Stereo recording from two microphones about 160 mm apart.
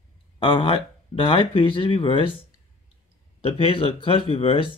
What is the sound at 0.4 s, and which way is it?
Speech, 35° left (ahead or behind).